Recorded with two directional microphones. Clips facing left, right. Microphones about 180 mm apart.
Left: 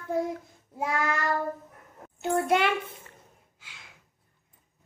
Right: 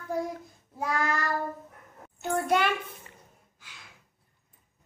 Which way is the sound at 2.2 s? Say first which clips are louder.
Left 2 dB; 25° left (ahead or behind).